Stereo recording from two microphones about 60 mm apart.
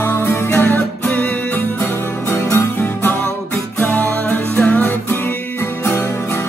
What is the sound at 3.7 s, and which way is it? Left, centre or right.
Music, left.